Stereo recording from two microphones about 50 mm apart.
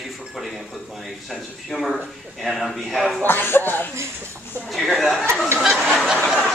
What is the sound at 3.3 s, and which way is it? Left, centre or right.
Speech, left.